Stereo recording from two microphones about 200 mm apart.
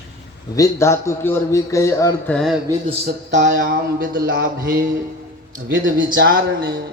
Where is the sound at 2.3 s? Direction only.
Centre (ahead or behind).